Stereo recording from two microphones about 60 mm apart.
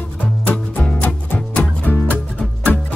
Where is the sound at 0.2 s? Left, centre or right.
Left.